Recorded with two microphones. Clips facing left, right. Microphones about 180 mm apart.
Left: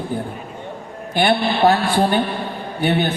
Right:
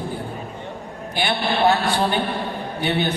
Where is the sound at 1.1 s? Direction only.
50° left (ahead or behind).